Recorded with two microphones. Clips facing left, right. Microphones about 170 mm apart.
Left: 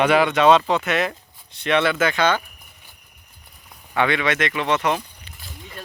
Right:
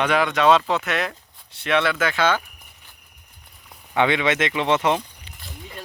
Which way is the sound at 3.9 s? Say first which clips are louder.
Right 1 dB; 20° right (ahead or behind).